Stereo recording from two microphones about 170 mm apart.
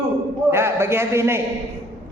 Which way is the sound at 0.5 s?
15° right (ahead or behind).